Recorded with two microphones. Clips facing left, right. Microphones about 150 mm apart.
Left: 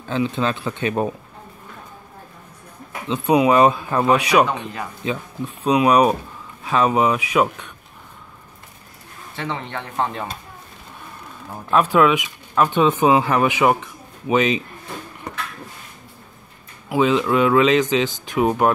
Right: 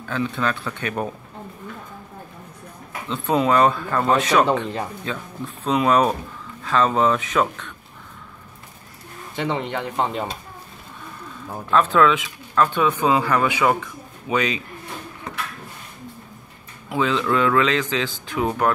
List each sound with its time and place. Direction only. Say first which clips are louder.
0.1 s speech: left 3 dB; 20° left (ahead or behind)
3.1 s speech: left 4 dB; 15° left (ahead or behind)
9.3 s speech: right 4 dB; 15° right (ahead or behind)
11.7 s speech: left 1 dB; 15° left (ahead or behind)
16.9 s speech: left 4 dB; 20° left (ahead or behind)